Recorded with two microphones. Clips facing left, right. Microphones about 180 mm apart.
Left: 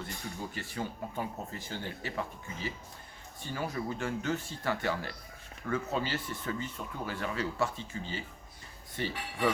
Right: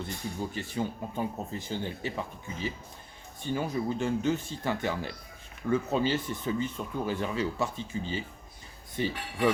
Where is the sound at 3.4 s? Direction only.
20° right (ahead or behind).